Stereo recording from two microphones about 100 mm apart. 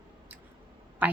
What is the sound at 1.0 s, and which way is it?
Speech, 15° right (ahead or behind).